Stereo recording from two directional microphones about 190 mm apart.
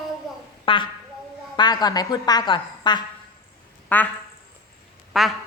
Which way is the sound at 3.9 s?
10° left (ahead or behind).